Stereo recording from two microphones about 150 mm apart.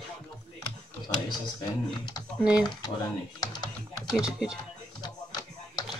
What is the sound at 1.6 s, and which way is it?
Speech, 25° left (ahead or behind).